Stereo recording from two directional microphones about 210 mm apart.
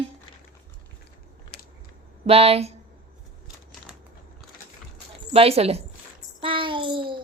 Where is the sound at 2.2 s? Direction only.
30° right (ahead or behind).